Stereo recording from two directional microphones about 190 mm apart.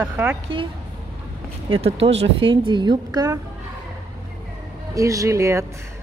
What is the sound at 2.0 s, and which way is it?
A woman's voice, 30° right (ahead or behind).